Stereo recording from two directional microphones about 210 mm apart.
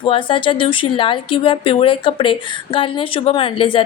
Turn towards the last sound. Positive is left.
turn(degrees=25)  # may be behind; listen again after turning